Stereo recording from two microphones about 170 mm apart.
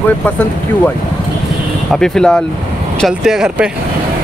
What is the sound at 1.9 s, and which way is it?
Speech, 5° left (ahead or behind).